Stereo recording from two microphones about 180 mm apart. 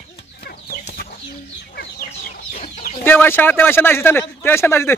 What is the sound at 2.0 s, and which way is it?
Chicken, 50° left (ahead or behind).